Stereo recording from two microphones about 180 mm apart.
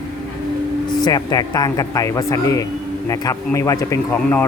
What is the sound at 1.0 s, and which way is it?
A man's voice, 20° left (ahead or behind).